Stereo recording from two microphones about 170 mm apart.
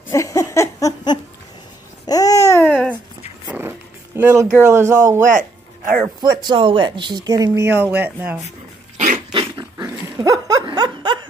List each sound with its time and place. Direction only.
0.1 s laughter: 20° left (ahead or behind)
2.0 s babbling: 20° left (ahead or behind)
2.7 s a sound: 5° left (ahead or behind)
3.4 s vehicle: 10° right (ahead or behind)
4.2 s speech: 10° right (ahead or behind)
5.2 s speech: 50° right (ahead or behind)
6.2 s speech: 25° right (ahead or behind)
7.7 s speech: 10° right (ahead or behind)
8.9 s dog: 50° right (ahead or behind)
9.3 s dog: 25° right (ahead or behind)